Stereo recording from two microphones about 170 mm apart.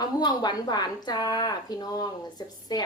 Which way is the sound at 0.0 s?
25° left (ahead or behind).